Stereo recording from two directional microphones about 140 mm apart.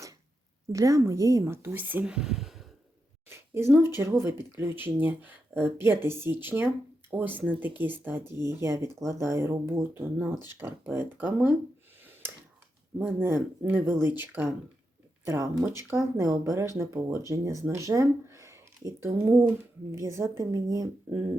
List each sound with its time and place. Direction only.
0.7 s speech: 25° right (ahead or behind); by 2.6 s centre (ahead or behind)
3.2 s speech: 15° right (ahead or behind)
13.0 s speech: 15° right (ahead or behind)
21.1 s speech: 15° right (ahead or behind)